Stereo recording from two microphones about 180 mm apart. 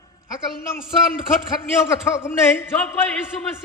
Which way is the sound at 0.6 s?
50° left (ahead or behind).